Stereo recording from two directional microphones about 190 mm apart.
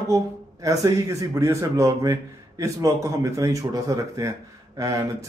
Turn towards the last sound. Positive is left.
turn(degrees=-15)  # may be behind; listen again after turning